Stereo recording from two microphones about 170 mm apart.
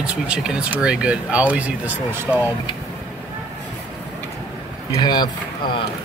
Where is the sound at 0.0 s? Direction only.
5° right (ahead or behind).